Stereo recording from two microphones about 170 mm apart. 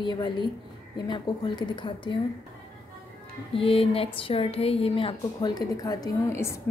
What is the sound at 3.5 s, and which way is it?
A woman's voice, 35° left (ahead or behind).